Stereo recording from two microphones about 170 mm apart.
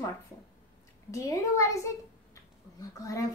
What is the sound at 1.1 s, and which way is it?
Speech, 20° left (ahead or behind).